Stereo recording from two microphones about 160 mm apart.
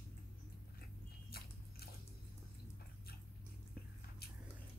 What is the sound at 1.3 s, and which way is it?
Biting, 75° left (ahead or behind).